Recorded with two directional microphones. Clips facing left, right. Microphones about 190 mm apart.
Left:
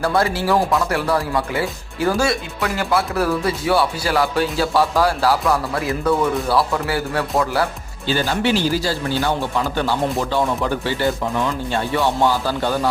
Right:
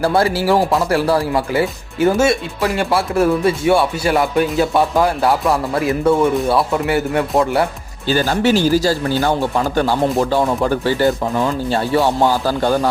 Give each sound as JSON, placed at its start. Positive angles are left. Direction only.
{"t": 0.0, "sound": "speech", "side_deg": -30}
{"t": 8.0, "sound": "speech", "side_deg": -45}